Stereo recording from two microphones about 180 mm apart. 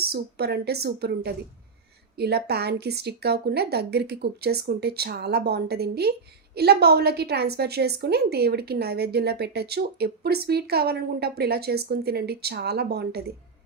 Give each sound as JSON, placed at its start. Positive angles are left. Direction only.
{"t": 0.0, "sound": "speech", "side_deg": -60}